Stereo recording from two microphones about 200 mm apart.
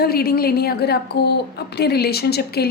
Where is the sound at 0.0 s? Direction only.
50° left (ahead or behind).